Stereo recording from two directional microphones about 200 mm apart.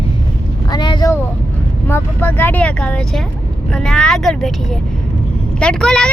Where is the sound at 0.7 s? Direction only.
20° left (ahead or behind).